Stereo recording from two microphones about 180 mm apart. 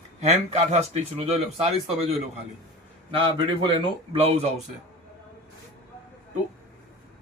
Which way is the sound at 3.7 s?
35° right (ahead or behind).